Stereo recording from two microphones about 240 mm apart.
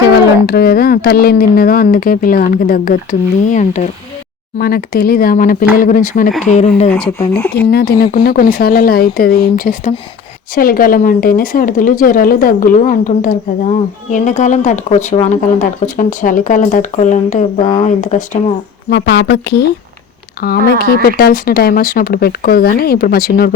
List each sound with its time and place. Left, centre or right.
0.4 s speech: left
7.2 s speech: centre
7.7 s speech: left